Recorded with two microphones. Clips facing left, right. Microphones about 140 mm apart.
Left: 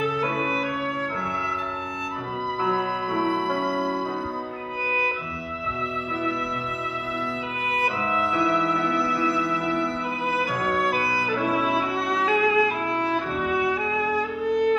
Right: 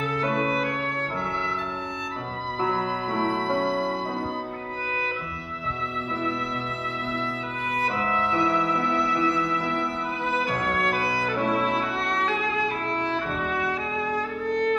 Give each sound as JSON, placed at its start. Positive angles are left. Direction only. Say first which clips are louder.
{"t": 3.1, "sound": "music", "louder": "left 1 dB", "side_deg": -25}
{"t": 8.0, "sound": "music", "louder": "even", "side_deg": 15}
{"t": 8.3, "sound": "music", "louder": "left 1 dB", "side_deg": -20}
{"t": 10.4, "sound": "music", "louder": "left 2 dB", "side_deg": 0}